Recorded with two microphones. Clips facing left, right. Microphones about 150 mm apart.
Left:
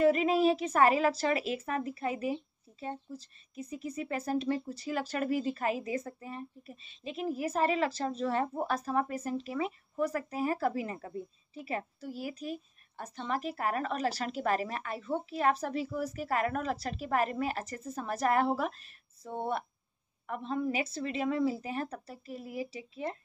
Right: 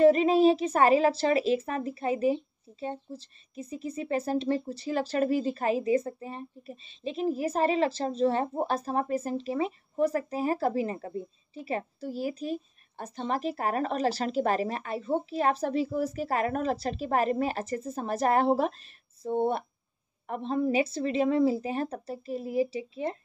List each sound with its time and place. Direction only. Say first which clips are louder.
0.0 s a woman's voice: right 5 dB; 30° right (ahead or behind)